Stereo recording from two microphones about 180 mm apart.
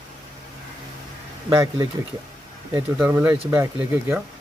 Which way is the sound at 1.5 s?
20° right (ahead or behind).